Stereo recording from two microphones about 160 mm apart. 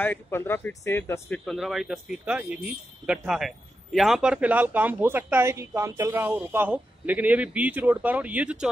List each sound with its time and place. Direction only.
0.0 s speech: 15° left (ahead or behind)
1.3 s speech: 5° left (ahead or behind)